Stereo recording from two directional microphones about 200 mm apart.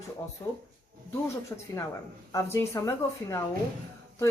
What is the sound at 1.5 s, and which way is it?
Speech, 15° left (ahead or behind).